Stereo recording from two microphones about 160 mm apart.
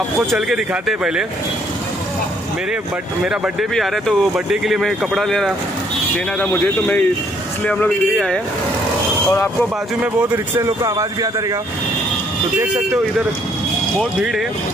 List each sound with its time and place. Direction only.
0.3 s speech: centre (ahead or behind)
3.3 s speech: 5° right (ahead or behind)
10.3 s speech: 20° right (ahead or behind)